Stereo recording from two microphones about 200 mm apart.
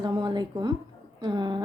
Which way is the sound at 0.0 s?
20° right (ahead or behind).